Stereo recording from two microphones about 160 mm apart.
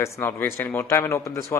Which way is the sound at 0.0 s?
15° left (ahead or behind).